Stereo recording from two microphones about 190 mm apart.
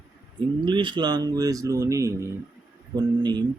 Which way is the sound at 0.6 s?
25° right (ahead or behind).